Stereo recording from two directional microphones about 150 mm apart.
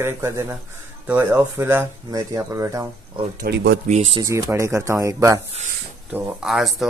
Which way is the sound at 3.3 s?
90° right.